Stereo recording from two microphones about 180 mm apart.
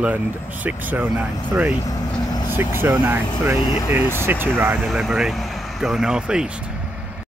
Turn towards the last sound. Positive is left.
turn(degrees=-5)  # may be behind; listen again after turning